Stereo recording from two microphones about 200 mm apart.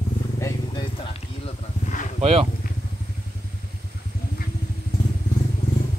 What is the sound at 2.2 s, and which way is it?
Speech, 30° right (ahead or behind).